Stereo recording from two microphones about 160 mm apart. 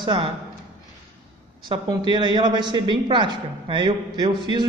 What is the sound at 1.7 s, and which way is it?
A woman's voice, 30° right (ahead or behind).